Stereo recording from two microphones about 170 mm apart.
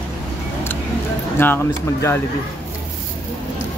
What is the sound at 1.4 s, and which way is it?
Speech, 15° left (ahead or behind).